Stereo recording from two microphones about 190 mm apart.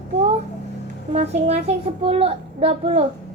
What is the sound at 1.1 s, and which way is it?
A child's voice, 35° right (ahead or behind).